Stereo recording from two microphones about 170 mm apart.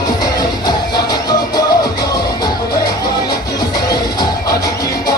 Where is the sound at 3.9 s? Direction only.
20° left (ahead or behind).